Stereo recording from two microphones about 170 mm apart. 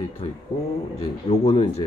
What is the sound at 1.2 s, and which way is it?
Speech, 35° left (ahead or behind).